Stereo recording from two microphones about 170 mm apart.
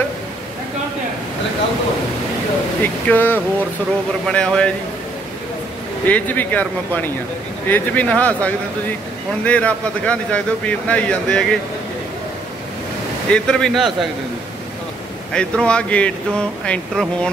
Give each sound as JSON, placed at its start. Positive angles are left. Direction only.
{"t": 2.8, "sound": "a man's voice", "side_deg": 10}
{"t": 6.0, "sound": "a man's voice", "side_deg": 10}
{"t": 13.3, "sound": "speech", "side_deg": 5}
{"t": 15.3, "sound": "speech", "side_deg": 5}